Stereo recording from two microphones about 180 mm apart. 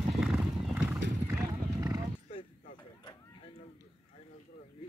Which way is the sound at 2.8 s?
25° left (ahead or behind).